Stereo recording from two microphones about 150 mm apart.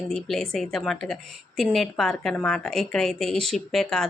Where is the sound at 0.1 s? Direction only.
5° left (ahead or behind).